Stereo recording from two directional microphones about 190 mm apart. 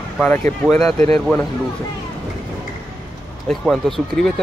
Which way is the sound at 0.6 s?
Centre (ahead or behind).